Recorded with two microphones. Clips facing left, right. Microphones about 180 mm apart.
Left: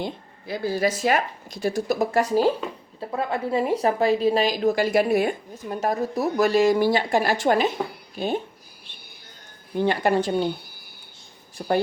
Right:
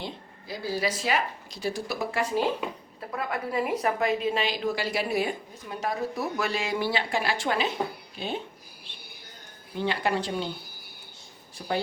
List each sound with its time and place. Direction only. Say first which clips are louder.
0.0 s a woman's voice: left 7 dB; 55° left (ahead or behind)
3.0 s a woman's voice: left 5 dB; 30° left (ahead or behind); by 8.4 s 45° left (ahead or behind)
9.7 s a woman's voice: left 6 dB; 50° left (ahead or behind)